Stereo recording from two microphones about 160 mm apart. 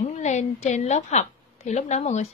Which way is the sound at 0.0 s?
45° left (ahead or behind).